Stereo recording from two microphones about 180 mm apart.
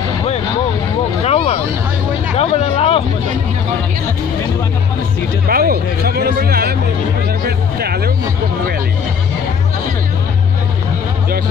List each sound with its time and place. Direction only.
1.2 s a sound: 35° left (ahead or behind)
2.3 s hubbub: 35° left (ahead or behind)
5.5 s speech: 55° right (ahead or behind)
7.4 s music: 60° right (ahead or behind)